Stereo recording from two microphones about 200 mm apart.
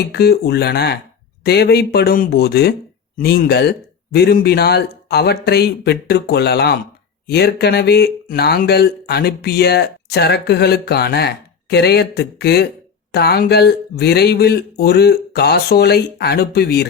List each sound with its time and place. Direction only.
0.1 s speech: 50° left (ahead or behind)